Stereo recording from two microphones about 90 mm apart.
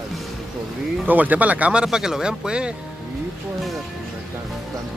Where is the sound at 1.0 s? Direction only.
20° right (ahead or behind).